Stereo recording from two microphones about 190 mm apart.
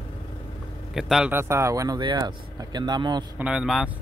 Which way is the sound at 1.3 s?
15° right (ahead or behind).